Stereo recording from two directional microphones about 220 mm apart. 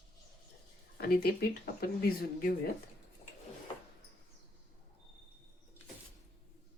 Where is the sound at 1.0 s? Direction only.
45° left (ahead or behind).